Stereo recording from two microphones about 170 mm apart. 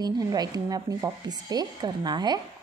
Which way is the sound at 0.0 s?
25° right (ahead or behind).